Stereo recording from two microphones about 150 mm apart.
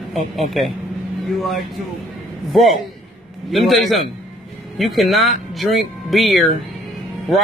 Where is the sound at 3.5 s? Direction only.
Centre (ahead or behind).